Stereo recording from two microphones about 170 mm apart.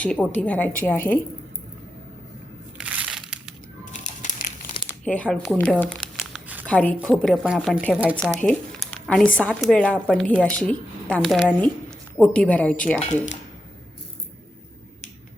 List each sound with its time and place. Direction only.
0.0 s speech: 5° left (ahead or behind)
2.7 s crushing: 5° right (ahead or behind)
3.9 s crumpling: 45° left (ahead or behind)
4.9 s speech: 5° left (ahead or behind)
6.1 s crumpling: 5° right (ahead or behind)
6.7 s speech: 5° left (ahead or behind)
13.0 s speech: 45° left (ahead or behind)